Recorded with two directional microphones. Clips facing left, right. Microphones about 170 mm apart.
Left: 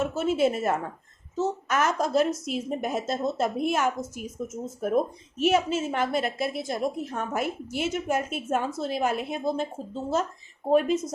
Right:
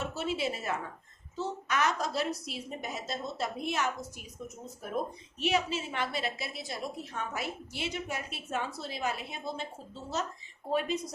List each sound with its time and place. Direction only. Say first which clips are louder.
0.0 s a woman's voice: left 9 dB; 50° left (ahead or behind)